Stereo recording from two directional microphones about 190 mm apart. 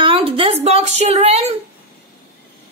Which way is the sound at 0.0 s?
30° right (ahead or behind).